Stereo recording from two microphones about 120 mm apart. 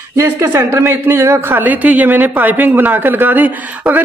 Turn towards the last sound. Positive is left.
turn(degrees=-15)  # may be behind; listen again after turning